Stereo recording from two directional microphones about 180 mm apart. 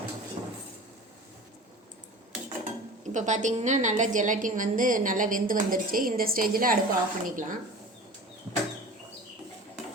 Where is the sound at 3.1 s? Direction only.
40° right (ahead or behind).